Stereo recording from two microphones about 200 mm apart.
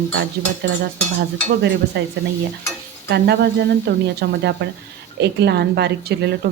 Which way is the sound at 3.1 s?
55° right (ahead or behind).